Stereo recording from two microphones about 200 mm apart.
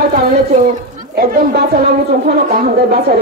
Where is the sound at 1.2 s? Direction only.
45° right (ahead or behind).